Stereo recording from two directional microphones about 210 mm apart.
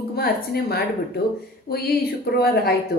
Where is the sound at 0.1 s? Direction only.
50° left (ahead or behind).